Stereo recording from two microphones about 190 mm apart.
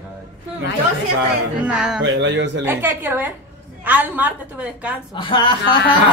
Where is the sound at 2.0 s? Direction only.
75° right (ahead or behind).